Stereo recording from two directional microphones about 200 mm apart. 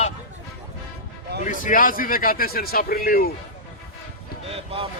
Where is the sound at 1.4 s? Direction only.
40° left (ahead or behind).